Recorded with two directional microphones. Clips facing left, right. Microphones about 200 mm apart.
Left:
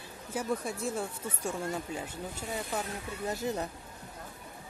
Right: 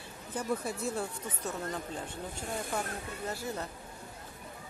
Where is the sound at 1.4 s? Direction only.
10° left (ahead or behind).